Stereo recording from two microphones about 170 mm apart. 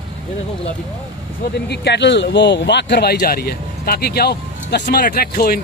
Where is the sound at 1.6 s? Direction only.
85° left; by 5.5 s 60° left (ahead or behind).